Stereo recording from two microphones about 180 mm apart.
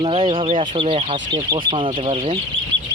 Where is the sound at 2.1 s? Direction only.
40° right (ahead or behind).